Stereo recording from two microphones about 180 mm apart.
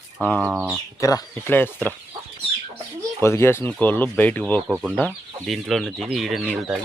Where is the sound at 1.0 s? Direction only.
20° left (ahead or behind).